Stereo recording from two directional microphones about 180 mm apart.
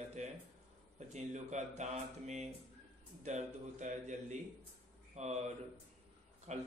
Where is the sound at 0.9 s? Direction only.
40° right (ahead or behind).